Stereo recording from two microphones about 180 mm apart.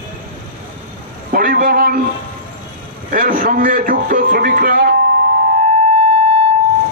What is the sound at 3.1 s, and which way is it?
A man's voice, 50° right (ahead or behind).